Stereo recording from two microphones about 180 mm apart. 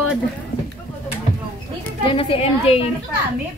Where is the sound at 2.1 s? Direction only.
30° left (ahead or behind).